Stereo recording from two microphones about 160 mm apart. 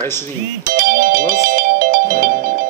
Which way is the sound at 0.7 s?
60° right (ahead or behind).